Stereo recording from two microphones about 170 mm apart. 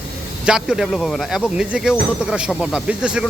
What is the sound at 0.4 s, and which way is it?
Speech, 5° right (ahead or behind).